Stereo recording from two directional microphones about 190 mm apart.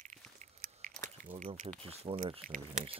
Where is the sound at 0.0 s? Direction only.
40° right (ahead or behind).